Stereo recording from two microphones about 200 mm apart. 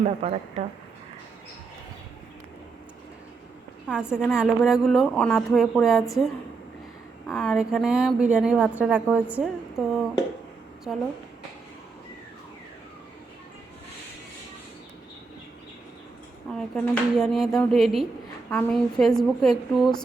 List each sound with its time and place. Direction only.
0.0 s speech: 35° right (ahead or behind)
3.8 s a woman's voice: 5° right (ahead or behind)
7.3 s a woman's voice: centre (ahead or behind)
16.5 s a woman's voice: 5° left (ahead or behind)